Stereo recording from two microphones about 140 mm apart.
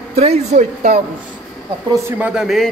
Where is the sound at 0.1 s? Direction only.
50° right (ahead or behind).